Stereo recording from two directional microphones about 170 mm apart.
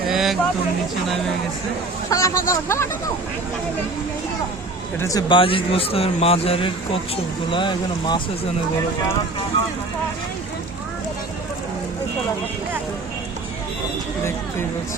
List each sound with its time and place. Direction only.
0.1 s a sound: centre (ahead or behind)
2.0 s speech: 20° left (ahead or behind)
4.9 s speech: 20° left (ahead or behind)